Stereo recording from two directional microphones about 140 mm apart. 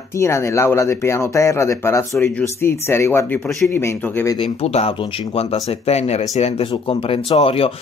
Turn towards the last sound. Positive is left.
turn(degrees=45)  # may be behind; listen again after turning